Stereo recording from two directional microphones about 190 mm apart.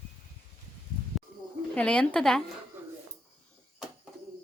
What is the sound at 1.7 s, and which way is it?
Speech, 5° left (ahead or behind).